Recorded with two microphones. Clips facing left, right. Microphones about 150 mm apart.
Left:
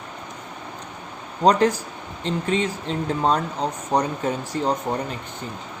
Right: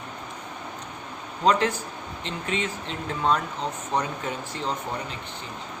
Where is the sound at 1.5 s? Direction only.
40° left (ahead or behind).